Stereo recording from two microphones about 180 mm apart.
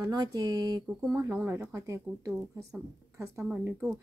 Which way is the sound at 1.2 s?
15° right (ahead or behind).